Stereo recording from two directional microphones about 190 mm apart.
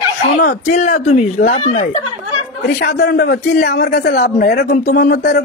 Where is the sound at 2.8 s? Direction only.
60° left (ahead or behind).